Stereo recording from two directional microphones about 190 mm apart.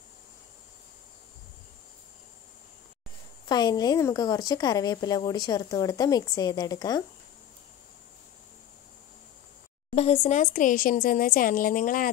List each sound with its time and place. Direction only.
3.4 s a woman's voice: 20° left (ahead or behind)
9.9 s speech: 35° left (ahead or behind)